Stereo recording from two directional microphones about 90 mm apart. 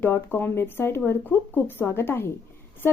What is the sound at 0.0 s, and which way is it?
A woman's voice, 20° left (ahead or behind).